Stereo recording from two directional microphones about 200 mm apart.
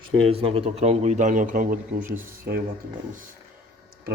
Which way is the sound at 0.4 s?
30° right (ahead or behind).